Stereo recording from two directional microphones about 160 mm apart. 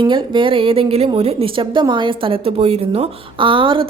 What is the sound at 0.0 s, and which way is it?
A woman's voice, 30° right (ahead or behind).